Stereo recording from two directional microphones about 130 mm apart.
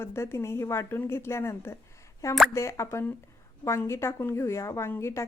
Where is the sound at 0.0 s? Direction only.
20° left (ahead or behind).